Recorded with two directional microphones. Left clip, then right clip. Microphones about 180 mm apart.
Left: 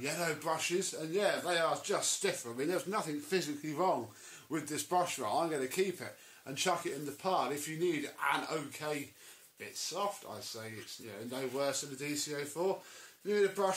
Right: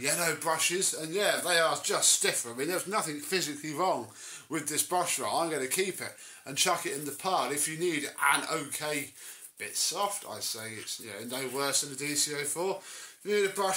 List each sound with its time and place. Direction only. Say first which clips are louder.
0.0 s speech: right 6 dB; 20° right (ahead or behind)
10.6 s speech: right 6 dB; 25° right (ahead or behind)